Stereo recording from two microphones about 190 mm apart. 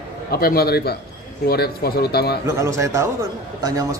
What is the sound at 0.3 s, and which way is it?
Speech, 55° left (ahead or behind).